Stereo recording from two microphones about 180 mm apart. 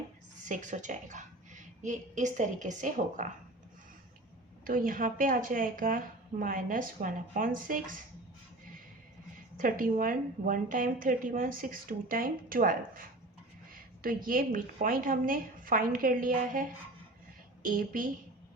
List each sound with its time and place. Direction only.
0.4 s a woman's voice: 45° right (ahead or behind)
4.6 s a woman's voice: 50° right (ahead or behind)
9.6 s a woman's voice: 50° right (ahead or behind)
14.3 s a woman's voice: 50° right (ahead or behind)